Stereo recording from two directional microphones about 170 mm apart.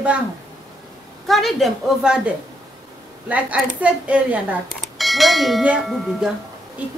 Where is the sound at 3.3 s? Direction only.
10° right (ahead or behind).